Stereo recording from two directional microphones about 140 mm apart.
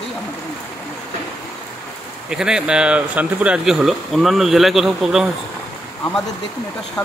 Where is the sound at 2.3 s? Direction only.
5° right (ahead or behind).